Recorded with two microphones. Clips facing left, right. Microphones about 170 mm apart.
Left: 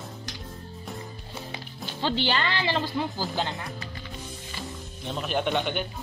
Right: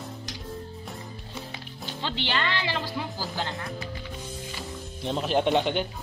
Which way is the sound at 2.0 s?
35° left (ahead or behind).